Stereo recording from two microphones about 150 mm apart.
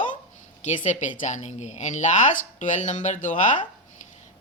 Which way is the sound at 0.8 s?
55° left (ahead or behind).